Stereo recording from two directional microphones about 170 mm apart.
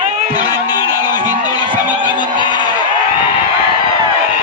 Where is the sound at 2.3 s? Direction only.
25° left (ahead or behind).